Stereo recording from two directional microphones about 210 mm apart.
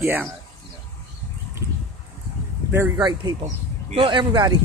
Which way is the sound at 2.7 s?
15° right (ahead or behind).